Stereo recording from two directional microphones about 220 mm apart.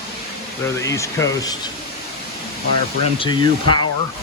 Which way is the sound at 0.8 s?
15° left (ahead or behind).